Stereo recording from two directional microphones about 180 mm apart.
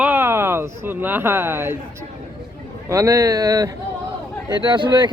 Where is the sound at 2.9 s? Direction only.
20° right (ahead or behind).